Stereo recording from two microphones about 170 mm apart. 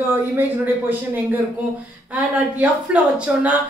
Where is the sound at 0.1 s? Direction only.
10° right (ahead or behind).